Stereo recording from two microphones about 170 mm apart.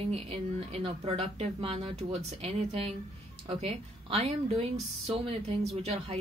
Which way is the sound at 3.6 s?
35° right (ahead or behind).